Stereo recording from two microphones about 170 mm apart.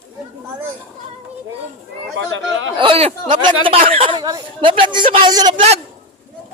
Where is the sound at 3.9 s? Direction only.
30° right (ahead or behind).